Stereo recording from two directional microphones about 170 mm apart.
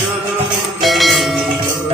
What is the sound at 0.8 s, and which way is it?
Music, centre (ahead or behind).